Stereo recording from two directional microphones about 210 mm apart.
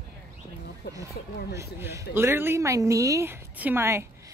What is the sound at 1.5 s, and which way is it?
A woman's voice, 15° right (ahead or behind).